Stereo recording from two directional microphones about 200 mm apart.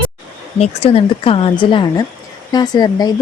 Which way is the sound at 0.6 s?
30° left (ahead or behind).